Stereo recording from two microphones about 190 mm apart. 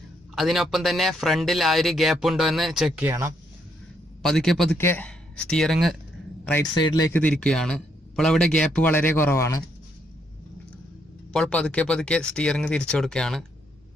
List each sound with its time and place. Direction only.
0.4 s speech: centre (ahead or behind)
3.1 s speech: 15° right (ahead or behind)
4.2 s speech: centre (ahead or behind)
6.7 s speech: 25° left (ahead or behind)
7.1 s speech: 10° left (ahead or behind)
11.3 s speech: 5° left (ahead or behind)